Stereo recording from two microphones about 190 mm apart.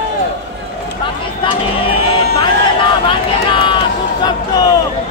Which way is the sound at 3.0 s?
25° left (ahead or behind).